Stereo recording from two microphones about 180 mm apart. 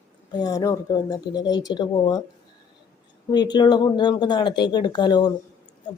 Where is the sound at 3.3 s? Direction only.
25° left (ahead or behind).